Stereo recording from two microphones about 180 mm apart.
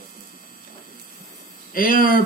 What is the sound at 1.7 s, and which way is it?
Speech, 50° left (ahead or behind).